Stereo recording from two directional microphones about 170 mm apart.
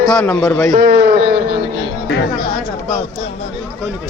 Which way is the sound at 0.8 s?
60° right (ahead or behind).